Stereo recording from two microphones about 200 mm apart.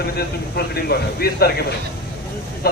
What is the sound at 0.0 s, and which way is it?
A man's voice, 50° left (ahead or behind).